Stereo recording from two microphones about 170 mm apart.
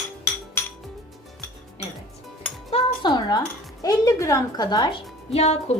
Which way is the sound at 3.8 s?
20° left (ahead or behind).